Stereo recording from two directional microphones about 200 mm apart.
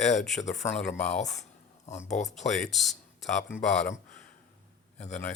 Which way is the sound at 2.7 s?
Centre (ahead or behind).